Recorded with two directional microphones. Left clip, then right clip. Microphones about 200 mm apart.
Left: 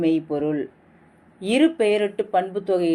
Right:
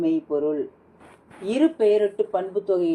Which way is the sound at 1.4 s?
10° left (ahead or behind).